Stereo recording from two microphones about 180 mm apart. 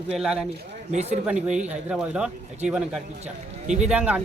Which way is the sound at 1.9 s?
5° right (ahead or behind).